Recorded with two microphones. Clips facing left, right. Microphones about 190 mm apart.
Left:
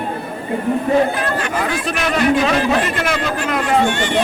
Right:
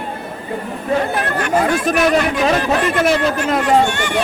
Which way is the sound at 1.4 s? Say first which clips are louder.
Right 5 dB; 50° right (ahead or behind).